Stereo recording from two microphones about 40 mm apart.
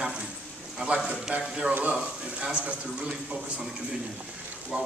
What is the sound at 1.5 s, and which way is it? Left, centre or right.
Speech, centre.